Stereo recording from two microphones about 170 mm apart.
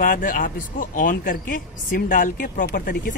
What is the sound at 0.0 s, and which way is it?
Speech, 50° left (ahead or behind).